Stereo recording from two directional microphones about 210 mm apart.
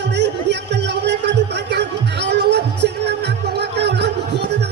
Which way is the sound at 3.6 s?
50° right (ahead or behind).